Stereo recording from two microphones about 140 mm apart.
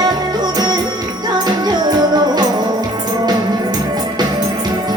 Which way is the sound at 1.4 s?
30° right (ahead or behind).